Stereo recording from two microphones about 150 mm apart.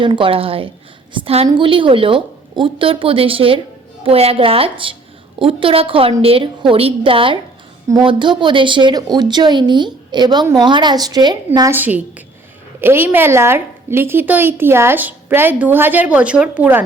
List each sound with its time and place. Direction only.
0.0 s a woman's voice: 35° right (ahead or behind)
11.7 s a woman's voice: 10° right (ahead or behind)